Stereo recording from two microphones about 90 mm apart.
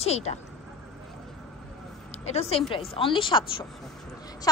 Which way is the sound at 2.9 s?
75° left (ahead or behind).